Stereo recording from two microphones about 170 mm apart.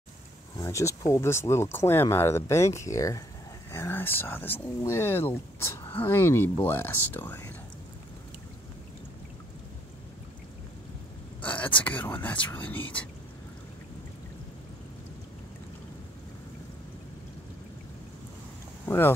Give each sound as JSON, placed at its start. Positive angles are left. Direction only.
{"t": 0.6, "sound": "speech", "side_deg": 20}
{"t": 11.4, "sound": "speech", "side_deg": 10}
{"t": 18.9, "sound": "speech", "side_deg": 15}